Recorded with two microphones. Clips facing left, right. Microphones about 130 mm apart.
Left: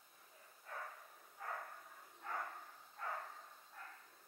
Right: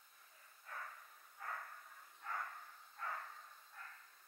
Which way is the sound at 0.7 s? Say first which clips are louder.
Left 2 dB; 20° left (ahead or behind).